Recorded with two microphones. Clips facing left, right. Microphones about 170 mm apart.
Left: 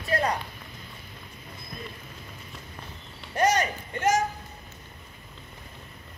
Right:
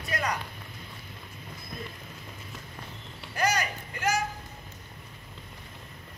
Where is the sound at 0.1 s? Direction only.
35° left (ahead or behind).